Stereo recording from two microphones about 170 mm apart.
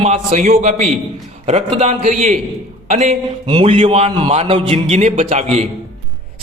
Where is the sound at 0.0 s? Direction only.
40° right (ahead or behind).